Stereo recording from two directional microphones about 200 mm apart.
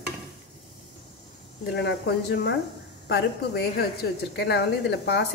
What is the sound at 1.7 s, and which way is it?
Speech, 55° left (ahead or behind).